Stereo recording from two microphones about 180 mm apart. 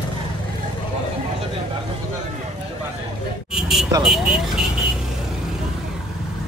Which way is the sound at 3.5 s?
5° right (ahead or behind).